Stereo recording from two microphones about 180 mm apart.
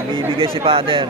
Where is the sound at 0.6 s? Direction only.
30° right (ahead or behind).